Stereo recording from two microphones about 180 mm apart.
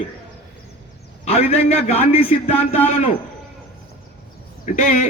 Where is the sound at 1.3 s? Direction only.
35° left (ahead or behind).